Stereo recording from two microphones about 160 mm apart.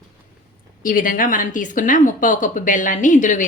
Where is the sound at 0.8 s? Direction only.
60° left (ahead or behind).